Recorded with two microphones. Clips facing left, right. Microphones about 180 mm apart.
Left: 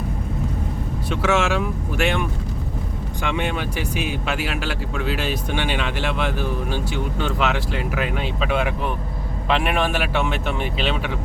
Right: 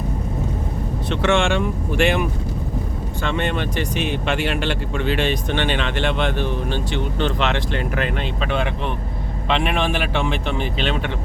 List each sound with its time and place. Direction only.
1.1 s speech: 5° left (ahead or behind)
3.2 s speech: 10° left (ahead or behind)